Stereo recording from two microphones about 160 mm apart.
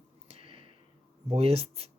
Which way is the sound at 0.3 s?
35° right (ahead or behind).